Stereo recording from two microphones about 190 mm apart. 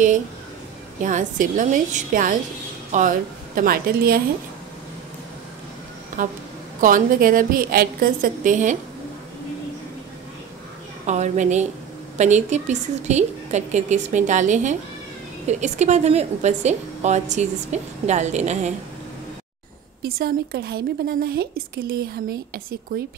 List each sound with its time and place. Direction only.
1.0 s a woman's voice: 45° right (ahead or behind)
6.1 s a sound: 45° right (ahead or behind)
6.8 s a woman's voice: 45° right (ahead or behind)
11.1 s a woman's voice: 40° right (ahead or behind)
20.0 s a woman's voice: 55° right (ahead or behind)